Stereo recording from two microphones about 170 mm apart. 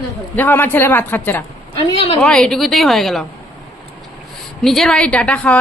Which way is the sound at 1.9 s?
35° left (ahead or behind).